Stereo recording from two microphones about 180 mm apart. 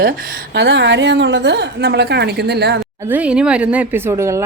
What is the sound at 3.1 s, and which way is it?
A woman's voice, 5° right (ahead or behind).